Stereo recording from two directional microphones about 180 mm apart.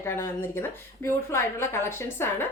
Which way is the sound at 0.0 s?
15° left (ahead or behind).